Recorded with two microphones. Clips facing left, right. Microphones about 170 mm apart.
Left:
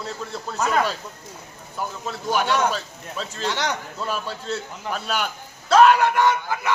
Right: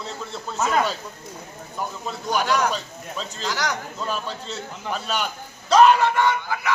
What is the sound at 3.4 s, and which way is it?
Speech, 25° left (ahead or behind).